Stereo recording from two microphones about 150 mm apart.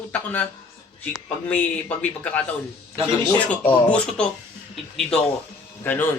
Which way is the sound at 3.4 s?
10° left (ahead or behind).